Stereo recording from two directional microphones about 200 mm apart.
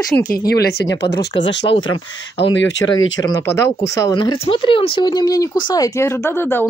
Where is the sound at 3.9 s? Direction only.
15° left (ahead or behind).